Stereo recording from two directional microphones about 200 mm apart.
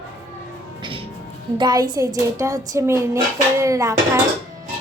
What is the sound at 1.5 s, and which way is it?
Speech, 20° right (ahead or behind).